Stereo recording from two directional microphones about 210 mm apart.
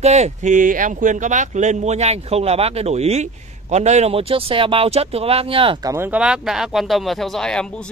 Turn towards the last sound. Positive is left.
turn(degrees=5)  # may be behind; listen again after turning